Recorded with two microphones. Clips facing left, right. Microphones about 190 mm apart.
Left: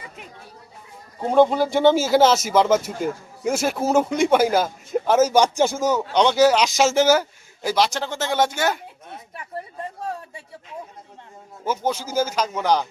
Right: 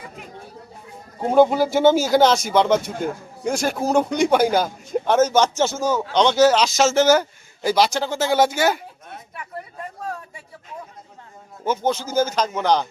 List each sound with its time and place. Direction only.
1.2 s speech: 5° right (ahead or behind)
9.3 s speech: 30° left (ahead or behind)
11.9 s speech: 10° left (ahead or behind)